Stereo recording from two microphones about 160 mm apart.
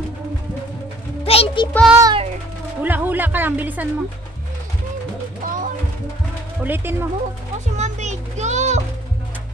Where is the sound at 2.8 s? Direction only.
10° right (ahead or behind).